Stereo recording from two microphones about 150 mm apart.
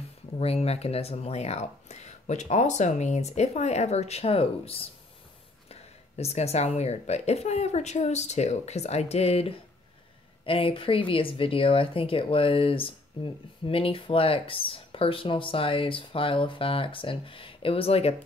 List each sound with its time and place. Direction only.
0.4 s speech: 40° left (ahead or behind)